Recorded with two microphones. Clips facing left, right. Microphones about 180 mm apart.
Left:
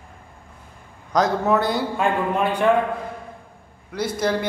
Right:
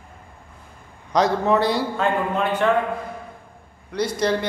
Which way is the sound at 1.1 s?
Centre (ahead or behind).